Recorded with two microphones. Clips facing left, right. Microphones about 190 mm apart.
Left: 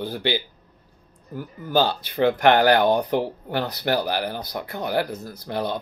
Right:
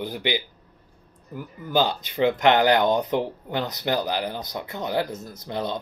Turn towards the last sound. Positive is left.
turn(degrees=-20)  # may be behind; listen again after turning